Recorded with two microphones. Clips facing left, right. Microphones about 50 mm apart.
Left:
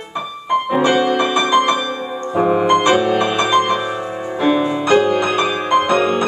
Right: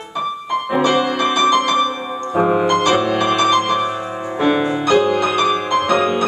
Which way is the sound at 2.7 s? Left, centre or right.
Centre.